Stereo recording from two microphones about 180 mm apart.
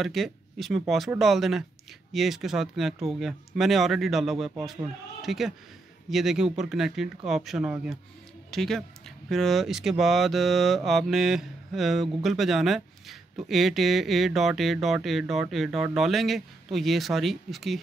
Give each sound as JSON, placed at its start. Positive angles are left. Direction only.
{"t": 0.0, "sound": "speech", "side_deg": 0}